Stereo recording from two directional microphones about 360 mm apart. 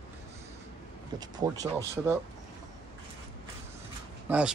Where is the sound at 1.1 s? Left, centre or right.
Centre.